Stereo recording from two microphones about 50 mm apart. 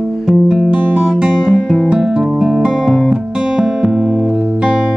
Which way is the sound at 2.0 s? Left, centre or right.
Centre.